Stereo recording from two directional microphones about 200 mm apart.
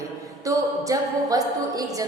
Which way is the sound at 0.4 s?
15° right (ahead or behind).